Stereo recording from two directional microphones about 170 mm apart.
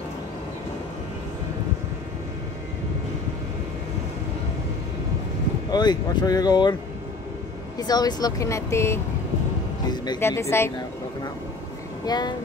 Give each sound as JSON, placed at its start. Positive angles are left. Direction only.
{"t": 5.7, "sound": "speech", "side_deg": 25}
{"t": 7.8, "sound": "speech", "side_deg": 25}
{"t": 12.0, "sound": "speech", "side_deg": 25}